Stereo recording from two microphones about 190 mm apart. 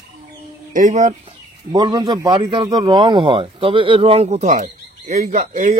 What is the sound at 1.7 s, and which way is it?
A man's voice, 20° right (ahead or behind).